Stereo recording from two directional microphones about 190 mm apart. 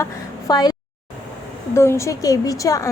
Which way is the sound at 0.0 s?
20° left (ahead or behind).